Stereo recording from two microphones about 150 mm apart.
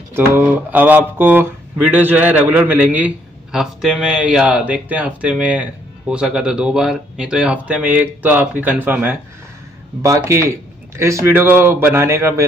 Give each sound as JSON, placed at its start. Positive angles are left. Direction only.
{"t": 0.1, "sound": "speech", "side_deg": -10}